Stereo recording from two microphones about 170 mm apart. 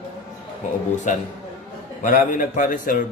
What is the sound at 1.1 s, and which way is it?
A man's voice, 45° left (ahead or behind).